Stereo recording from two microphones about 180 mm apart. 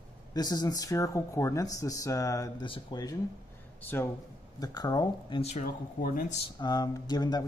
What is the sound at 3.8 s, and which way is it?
Speech, 10° left (ahead or behind).